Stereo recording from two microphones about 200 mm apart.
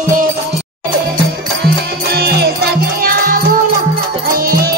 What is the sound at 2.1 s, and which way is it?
Music, 55° right (ahead or behind).